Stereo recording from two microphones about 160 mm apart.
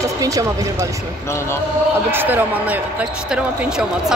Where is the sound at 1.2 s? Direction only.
15° left (ahead or behind).